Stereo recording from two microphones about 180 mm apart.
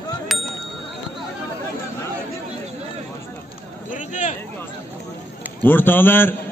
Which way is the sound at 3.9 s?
45° left (ahead or behind).